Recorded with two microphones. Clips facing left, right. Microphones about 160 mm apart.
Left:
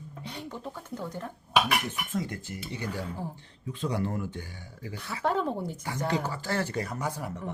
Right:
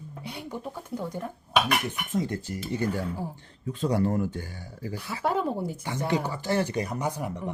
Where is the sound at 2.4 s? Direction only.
40° right (ahead or behind).